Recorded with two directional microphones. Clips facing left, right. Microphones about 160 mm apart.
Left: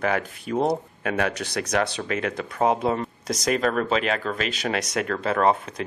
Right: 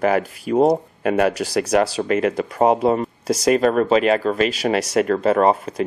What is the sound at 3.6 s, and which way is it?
Speech, 35° right (ahead or behind).